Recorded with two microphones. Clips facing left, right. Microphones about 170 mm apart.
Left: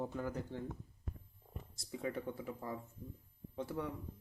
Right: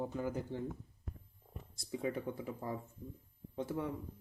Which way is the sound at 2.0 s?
10° right (ahead or behind).